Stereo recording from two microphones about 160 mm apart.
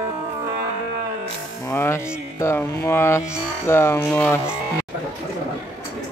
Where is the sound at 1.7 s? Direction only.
15° left (ahead or behind).